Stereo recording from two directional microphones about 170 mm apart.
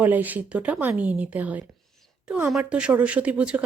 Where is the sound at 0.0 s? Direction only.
10° right (ahead or behind).